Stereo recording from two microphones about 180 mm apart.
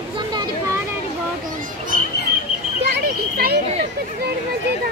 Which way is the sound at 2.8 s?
65° right (ahead or behind).